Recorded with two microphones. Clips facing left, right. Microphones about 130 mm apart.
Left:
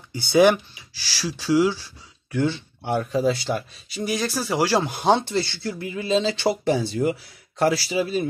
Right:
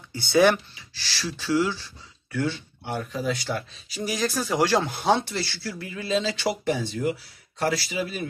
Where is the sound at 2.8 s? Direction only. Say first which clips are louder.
Left 7 dB; 45° left (ahead or behind).